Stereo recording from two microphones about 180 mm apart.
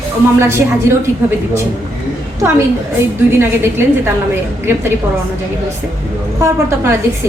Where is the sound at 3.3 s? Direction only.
15° right (ahead or behind).